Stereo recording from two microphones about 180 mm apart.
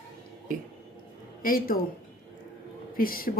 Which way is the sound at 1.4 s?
50° left (ahead or behind).